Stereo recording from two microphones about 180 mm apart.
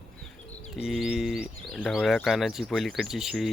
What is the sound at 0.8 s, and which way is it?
Speech, centre (ahead or behind).